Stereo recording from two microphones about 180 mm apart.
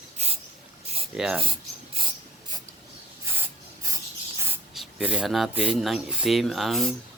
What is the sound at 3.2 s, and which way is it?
Rub, 15° right (ahead or behind).